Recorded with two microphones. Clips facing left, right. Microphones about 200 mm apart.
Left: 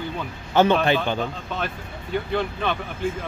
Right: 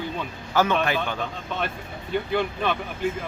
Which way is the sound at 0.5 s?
30° left (ahead or behind).